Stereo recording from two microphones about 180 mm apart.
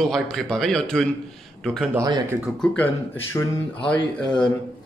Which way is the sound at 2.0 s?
20° right (ahead or behind).